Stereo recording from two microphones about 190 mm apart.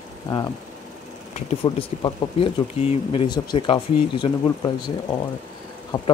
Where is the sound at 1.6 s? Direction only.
25° left (ahead or behind).